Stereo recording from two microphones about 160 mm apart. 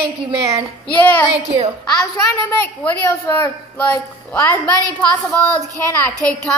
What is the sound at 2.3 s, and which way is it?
A woman's voice, 15° left (ahead or behind).